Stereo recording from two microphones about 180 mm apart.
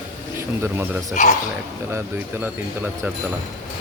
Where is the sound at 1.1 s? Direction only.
45° left (ahead or behind).